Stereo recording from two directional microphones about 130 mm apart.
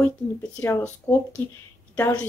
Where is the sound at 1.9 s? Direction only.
10° left (ahead or behind).